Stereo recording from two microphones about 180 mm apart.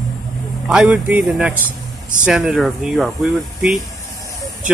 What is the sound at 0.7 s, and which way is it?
Speech, 5° right (ahead or behind).